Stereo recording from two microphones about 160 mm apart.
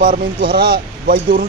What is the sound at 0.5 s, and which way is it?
Speech, 75° right (ahead or behind).